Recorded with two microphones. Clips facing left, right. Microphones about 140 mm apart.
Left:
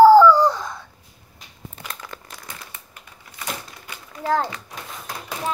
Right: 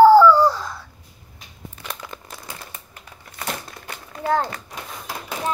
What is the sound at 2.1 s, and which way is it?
Crumpling, 10° right (ahead or behind).